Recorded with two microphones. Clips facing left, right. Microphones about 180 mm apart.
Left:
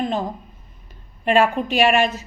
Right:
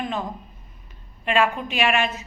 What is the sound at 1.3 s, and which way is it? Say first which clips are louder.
Speech: left 4 dB; 40° left (ahead or behind).